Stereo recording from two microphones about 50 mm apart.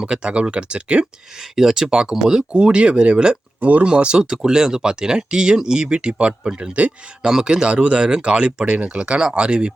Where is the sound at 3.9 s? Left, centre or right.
Centre.